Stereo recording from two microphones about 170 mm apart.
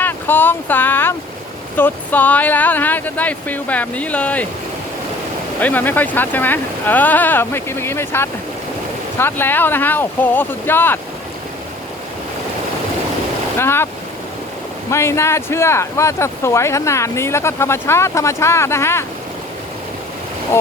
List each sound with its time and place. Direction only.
0.0 s speech: 10° left (ahead or behind)
5.5 s speech: 10° left (ahead or behind)
13.6 s speech: 15° left (ahead or behind)
14.8 s speech: 15° left (ahead or behind)